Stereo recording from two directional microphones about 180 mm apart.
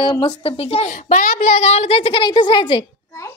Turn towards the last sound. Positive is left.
turn(degrees=25)  # may be behind; listen again after turning